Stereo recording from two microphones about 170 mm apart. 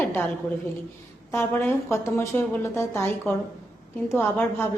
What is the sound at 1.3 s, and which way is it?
A woman's voice, 15° left (ahead or behind).